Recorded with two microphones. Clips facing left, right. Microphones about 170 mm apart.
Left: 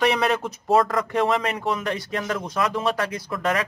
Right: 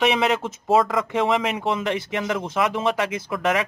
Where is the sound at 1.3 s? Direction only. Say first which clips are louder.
Right 1 dB; 25° right (ahead or behind).